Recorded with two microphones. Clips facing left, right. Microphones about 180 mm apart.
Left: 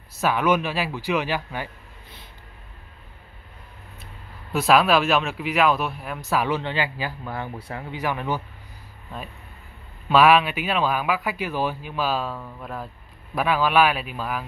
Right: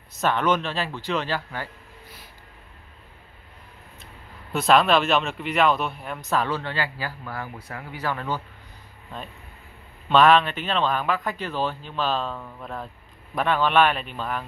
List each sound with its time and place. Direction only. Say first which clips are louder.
0.2 s speech: left 1 dB; 10° left (ahead or behind)
4.0 s speech: left 1 dB; 5° left (ahead or behind); by 8.0 s 25° left (ahead or behind)
8.0 s speech: left 2 dB; 15° left (ahead or behind)
10.0 s speech: even; 5° left (ahead or behind)